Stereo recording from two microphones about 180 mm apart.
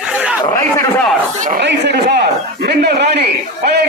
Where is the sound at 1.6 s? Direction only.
70° right (ahead or behind).